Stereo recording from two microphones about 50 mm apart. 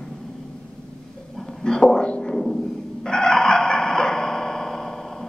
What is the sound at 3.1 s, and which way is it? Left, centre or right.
Fowl, centre.